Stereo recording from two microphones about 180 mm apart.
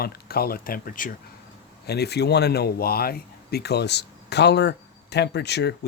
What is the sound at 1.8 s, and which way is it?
Speech, 65° left (ahead or behind).